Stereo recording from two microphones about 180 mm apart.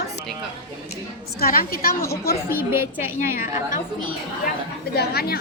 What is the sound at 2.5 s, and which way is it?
Speech, 15° right (ahead or behind).